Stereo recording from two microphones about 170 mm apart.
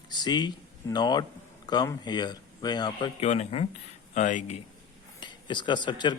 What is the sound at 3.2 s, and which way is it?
Speech, 40° left (ahead or behind).